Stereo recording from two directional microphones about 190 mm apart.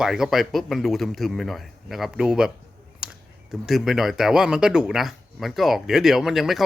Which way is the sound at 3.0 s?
5° right (ahead or behind).